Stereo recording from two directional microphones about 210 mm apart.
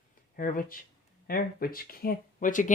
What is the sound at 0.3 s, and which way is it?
Speech, 40° left (ahead or behind).